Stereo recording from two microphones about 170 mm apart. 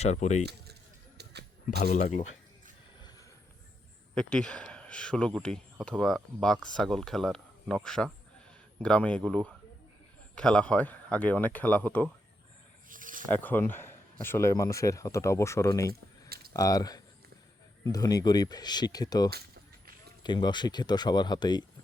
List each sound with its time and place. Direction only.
0.0 s speech: 40° left (ahead or behind)
1.2 s a sound: 75° right (ahead or behind)
1.8 s speech: 50° left (ahead or behind)
3.0 s a sound: 25° left (ahead or behind)
4.1 s a man's voice: 5° left (ahead or behind)
12.9 s snake: 50° right (ahead or behind)
13.3 s speech: 10° left (ahead or behind)